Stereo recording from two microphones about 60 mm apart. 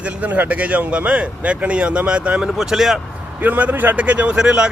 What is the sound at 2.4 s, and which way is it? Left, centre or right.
Speech, centre.